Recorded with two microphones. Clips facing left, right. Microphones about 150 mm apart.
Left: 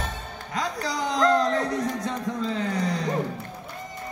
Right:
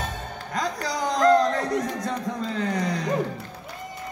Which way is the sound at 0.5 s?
45° right (ahead or behind).